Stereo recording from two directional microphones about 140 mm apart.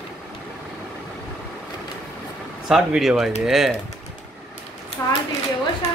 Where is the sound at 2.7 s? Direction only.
Centre (ahead or behind).